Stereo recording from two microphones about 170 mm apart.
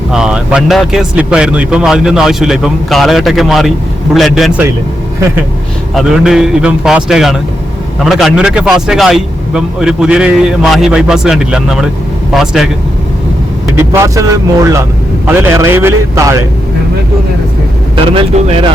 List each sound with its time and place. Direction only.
0.1 s speech: 5° right (ahead or behind)
5.9 s speech: centre (ahead or behind)
13.7 s a man's voice: 15° right (ahead or behind)
15.3 s a man's voice: 15° right (ahead or behind)
17.9 s vehicle: 30° right (ahead or behind)